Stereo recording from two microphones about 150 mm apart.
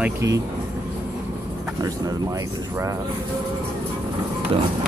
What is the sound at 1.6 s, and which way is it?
Speech, 25° right (ahead or behind).